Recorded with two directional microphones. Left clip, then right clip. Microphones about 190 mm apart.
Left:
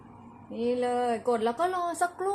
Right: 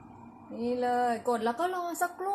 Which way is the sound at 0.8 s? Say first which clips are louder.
Right 2 dB; 20° left (ahead or behind).